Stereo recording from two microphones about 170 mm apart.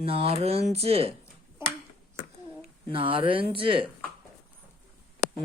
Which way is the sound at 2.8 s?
30° right (ahead or behind).